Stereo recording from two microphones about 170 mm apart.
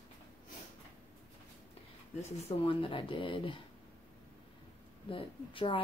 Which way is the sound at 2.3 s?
40° left (ahead or behind).